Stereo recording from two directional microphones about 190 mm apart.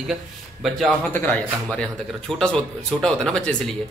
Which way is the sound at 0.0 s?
Centre (ahead or behind).